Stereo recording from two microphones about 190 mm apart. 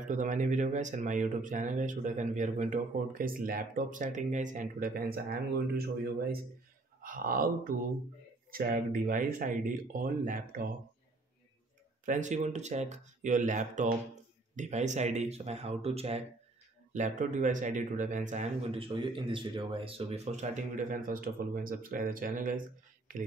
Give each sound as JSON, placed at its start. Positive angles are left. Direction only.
{"t": 0.1, "sound": "speech", "side_deg": -40}
{"t": 12.1, "sound": "speech", "side_deg": -40}